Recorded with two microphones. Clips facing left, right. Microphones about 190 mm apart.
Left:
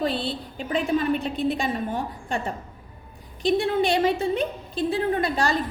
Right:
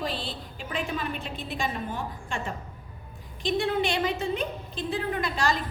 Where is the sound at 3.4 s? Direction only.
35° left (ahead or behind).